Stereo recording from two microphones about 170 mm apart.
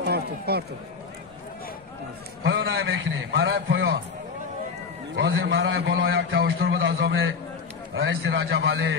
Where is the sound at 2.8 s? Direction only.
90° right.